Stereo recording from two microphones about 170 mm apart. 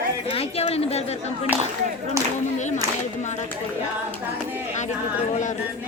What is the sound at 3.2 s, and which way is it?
Speech, 45° left (ahead or behind).